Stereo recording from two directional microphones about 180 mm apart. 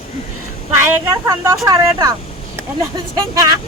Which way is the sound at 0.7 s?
15° right (ahead or behind).